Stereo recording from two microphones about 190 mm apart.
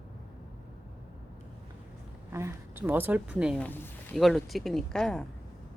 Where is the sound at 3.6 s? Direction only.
10° left (ahead or behind).